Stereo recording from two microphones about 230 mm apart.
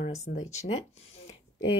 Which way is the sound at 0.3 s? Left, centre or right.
Left.